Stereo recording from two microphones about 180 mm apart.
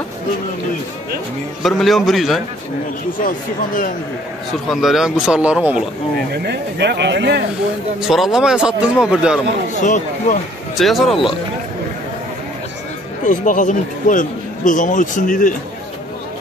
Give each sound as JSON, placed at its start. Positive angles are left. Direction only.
{"t": 1.6, "sound": "speech", "side_deg": 0}
{"t": 3.2, "sound": "a man's voice", "side_deg": 50}
{"t": 4.6, "sound": "speech", "side_deg": 0}
{"t": 6.3, "sound": "speech", "side_deg": -65}
{"t": 8.1, "sound": "speech", "side_deg": 0}
{"t": 9.8, "sound": "a man's voice", "side_deg": 40}
{"t": 10.8, "sound": "speech", "side_deg": 0}
{"t": 13.2, "sound": "a man's voice", "side_deg": 45}